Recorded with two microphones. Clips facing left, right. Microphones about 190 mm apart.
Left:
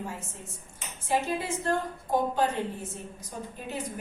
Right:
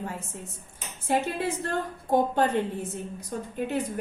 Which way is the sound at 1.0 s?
65° right (ahead or behind).